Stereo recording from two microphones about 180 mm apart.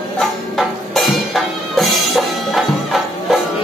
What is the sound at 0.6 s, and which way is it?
Music, centre (ahead or behind).